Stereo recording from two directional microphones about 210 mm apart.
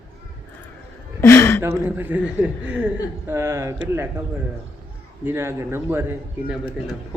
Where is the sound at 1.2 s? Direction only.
10° left (ahead or behind).